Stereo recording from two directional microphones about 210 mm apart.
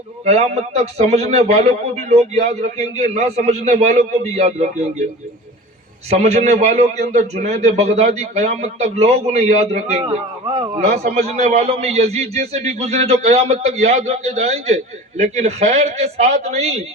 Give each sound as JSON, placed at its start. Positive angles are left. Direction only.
{"t": 0.3, "sound": "a man's voice", "side_deg": -30}
{"t": 6.1, "sound": "a man's voice", "side_deg": -30}